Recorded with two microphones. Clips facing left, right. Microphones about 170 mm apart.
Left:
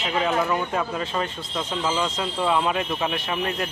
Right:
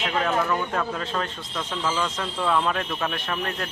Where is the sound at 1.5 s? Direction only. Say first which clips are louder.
Left 2 dB; 15° left (ahead or behind).